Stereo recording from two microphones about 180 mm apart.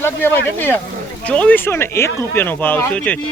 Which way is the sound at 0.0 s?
10° left (ahead or behind).